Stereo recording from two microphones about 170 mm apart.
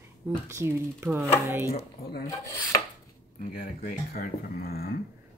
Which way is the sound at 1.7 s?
60° left (ahead or behind).